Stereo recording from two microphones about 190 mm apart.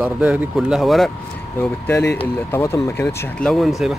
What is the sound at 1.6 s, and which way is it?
Speech, 10° left (ahead or behind).